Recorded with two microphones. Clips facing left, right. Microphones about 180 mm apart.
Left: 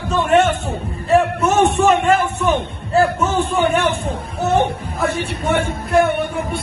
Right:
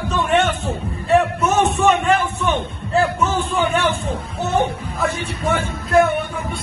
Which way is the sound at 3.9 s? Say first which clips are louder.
Left 1 dB; 60° left (ahead or behind).